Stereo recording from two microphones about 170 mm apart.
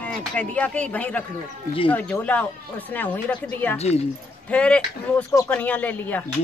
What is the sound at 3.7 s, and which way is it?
Speech, 40° left (ahead or behind).